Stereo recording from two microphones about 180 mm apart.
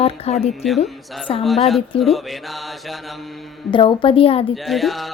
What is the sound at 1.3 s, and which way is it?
Speech, 30° left (ahead or behind).